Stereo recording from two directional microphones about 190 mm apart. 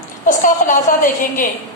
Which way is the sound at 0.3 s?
45° left (ahead or behind).